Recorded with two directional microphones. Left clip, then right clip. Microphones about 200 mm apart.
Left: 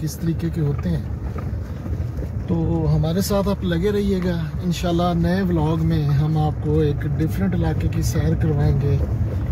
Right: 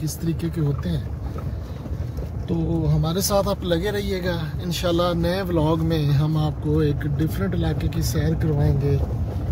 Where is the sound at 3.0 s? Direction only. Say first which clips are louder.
Right 3 dB; 50° right (ahead or behind).